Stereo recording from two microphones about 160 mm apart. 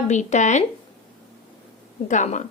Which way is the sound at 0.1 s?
45° left (ahead or behind).